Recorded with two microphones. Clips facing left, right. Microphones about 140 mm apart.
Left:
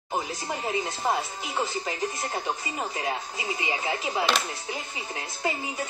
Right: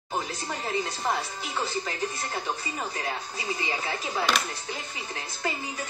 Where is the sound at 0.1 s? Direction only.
15° left (ahead or behind).